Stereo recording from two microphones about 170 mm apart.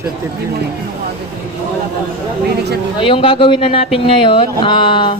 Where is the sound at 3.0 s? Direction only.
30° left (ahead or behind).